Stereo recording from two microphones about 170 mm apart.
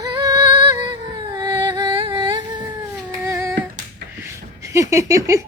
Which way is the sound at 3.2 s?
15° right (ahead or behind).